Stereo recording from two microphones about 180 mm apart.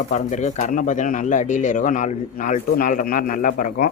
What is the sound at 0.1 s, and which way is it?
Speech, 40° left (ahead or behind).